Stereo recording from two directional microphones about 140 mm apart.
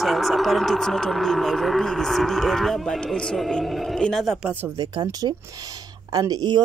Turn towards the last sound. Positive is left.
turn(degrees=-25)  # may be behind; listen again after turning